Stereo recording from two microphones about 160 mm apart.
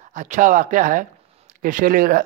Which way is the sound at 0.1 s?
50° right (ahead or behind).